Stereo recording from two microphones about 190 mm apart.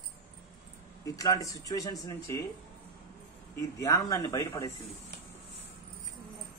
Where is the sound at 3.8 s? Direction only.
15° left (ahead or behind).